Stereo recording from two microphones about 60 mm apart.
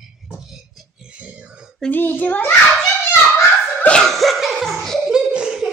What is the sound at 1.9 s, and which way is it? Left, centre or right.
Speech, left.